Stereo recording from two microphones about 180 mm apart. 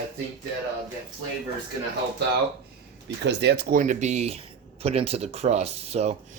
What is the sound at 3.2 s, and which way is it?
Speech, 65° right (ahead or behind).